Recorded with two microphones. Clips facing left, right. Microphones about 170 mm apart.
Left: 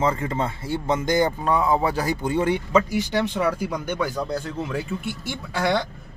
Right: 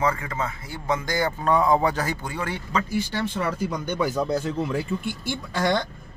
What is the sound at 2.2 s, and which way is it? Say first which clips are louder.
Speech: left 8 dB; 20° left (ahead or behind).